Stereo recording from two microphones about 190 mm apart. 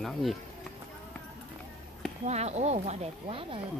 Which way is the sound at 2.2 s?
35° right (ahead or behind).